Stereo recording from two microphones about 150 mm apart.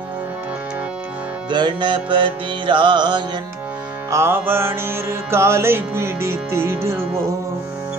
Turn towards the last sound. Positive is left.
turn(degrees=-20)  # may be behind; listen again after turning